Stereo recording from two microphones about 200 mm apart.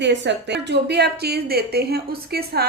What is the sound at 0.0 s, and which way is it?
Speech, 60° right (ahead or behind).